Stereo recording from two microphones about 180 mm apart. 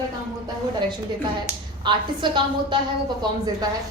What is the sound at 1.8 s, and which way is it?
Speech, 25° right (ahead or behind).